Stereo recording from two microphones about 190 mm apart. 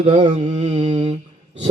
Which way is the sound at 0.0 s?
30° right (ahead or behind).